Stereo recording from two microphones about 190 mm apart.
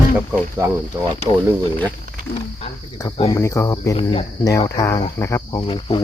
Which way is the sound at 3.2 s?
15° left (ahead or behind).